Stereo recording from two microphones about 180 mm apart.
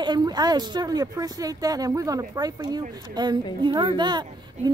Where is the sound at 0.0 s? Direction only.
25° right (ahead or behind).